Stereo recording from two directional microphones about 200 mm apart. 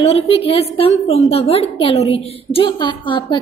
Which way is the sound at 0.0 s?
30° left (ahead or behind).